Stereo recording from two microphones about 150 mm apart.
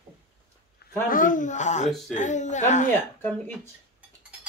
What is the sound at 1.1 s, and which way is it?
A woman's voice, 60° left (ahead or behind).